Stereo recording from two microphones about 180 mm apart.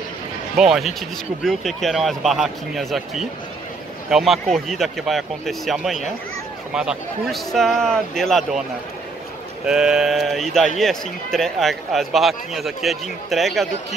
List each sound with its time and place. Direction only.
0.6 s speech: centre (ahead or behind)
9.7 s speech: 5° right (ahead or behind)